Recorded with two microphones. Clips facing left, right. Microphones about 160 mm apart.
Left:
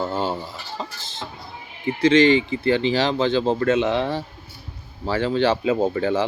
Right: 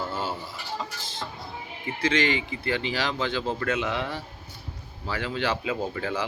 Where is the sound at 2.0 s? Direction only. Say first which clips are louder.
Left 10 dB; 25° left (ahead or behind).